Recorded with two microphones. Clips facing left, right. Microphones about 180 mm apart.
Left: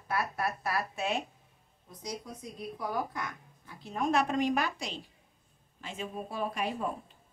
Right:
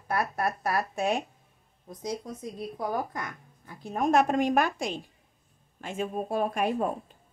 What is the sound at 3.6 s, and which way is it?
Speech, 45° right (ahead or behind).